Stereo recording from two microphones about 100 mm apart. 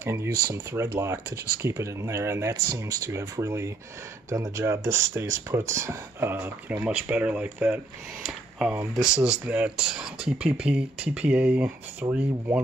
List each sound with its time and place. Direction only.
0.0 s speech: 25° right (ahead or behind)